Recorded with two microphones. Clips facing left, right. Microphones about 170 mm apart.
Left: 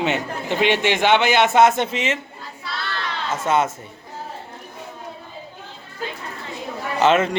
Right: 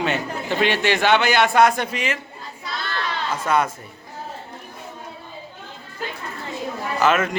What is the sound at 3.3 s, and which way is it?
Speech, 25° left (ahead or behind).